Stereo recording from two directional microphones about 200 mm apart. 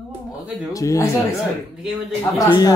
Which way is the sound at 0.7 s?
15° left (ahead or behind).